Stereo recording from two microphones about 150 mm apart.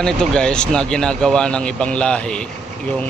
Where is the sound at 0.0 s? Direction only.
5° left (ahead or behind).